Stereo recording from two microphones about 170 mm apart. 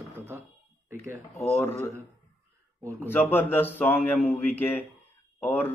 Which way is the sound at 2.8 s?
15° right (ahead or behind).